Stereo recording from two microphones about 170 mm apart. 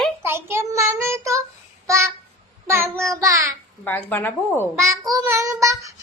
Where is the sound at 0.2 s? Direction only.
15° right (ahead or behind).